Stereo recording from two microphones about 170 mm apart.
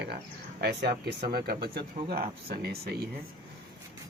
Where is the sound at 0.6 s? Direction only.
70° right (ahead or behind).